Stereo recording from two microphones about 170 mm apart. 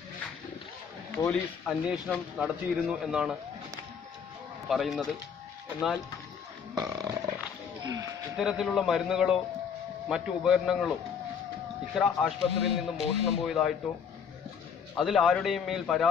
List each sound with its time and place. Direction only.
1.1 s speech: 10° left (ahead or behind)
4.6 s speech: centre (ahead or behind)
6.8 s roaring cats: 20° right (ahead or behind)
7.8 s speech: 20° right (ahead or behind)
8.4 s speech: centre (ahead or behind)
11.9 s speech: centre (ahead or behind)
15.0 s speech: centre (ahead or behind)